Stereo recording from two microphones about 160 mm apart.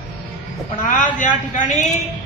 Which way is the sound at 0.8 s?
55° left (ahead or behind).